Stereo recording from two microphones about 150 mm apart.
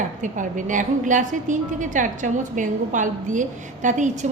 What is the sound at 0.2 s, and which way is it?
A woman's voice, 60° right (ahead or behind).